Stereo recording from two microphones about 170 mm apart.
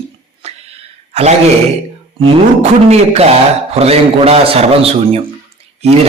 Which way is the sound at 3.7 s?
35° right (ahead or behind).